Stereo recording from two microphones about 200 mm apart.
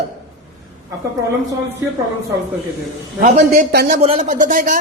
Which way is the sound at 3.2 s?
40° right (ahead or behind).